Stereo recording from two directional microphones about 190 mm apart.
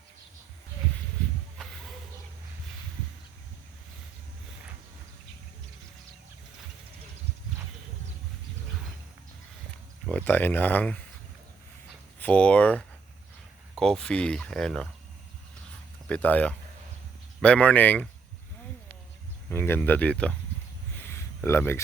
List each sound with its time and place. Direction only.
10.1 s speech: 10° left (ahead or behind)
12.2 s speech: 5° left (ahead or behind)
16.0 s speech: 10° left (ahead or behind)
19.5 s speech: 10° left (ahead or behind)
20.9 s a sound: 10° left (ahead or behind)